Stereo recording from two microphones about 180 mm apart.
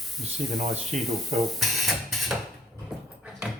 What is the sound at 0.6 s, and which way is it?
Speech, 40° right (ahead or behind).